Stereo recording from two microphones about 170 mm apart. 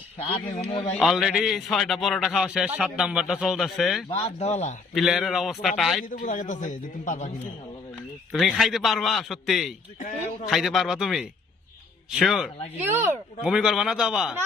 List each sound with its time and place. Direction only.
0.2 s speech: 30° left (ahead or behind)
0.9 s a man's voice: centre (ahead or behind)
4.1 s speech: 40° left (ahead or behind)
4.9 s a man's voice: centre (ahead or behind)
6.0 s a man's voice: 50° left (ahead or behind)
8.3 s a man's voice: centre (ahead or behind)
12.7 s a man's voice: 10° right (ahead or behind)